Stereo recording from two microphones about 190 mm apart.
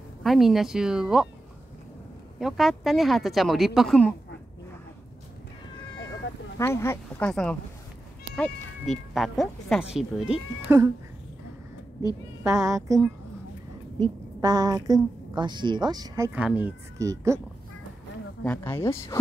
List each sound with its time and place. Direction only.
0.2 s speech: centre (ahead or behind)
2.4 s speech: centre (ahead or behind)
6.6 s speech: 15° left (ahead or behind)
9.1 s speech: centre (ahead or behind)
12.4 s speech: 15° right (ahead or behind)
14.4 s a woman's voice: 20° right (ahead or behind)
16.3 s speech: 5° right (ahead or behind)
18.4 s speech: 10° left (ahead or behind)